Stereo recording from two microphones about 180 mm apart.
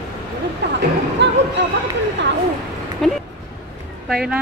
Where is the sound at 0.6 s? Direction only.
75° right (ahead or behind).